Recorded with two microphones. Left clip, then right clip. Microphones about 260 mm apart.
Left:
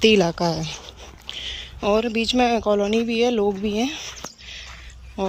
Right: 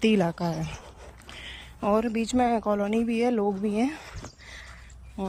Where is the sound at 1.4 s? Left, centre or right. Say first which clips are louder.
Left 5 dB; centre.